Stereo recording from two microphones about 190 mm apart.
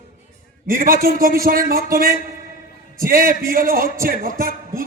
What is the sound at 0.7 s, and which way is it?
A man's voice, 50° right (ahead or behind).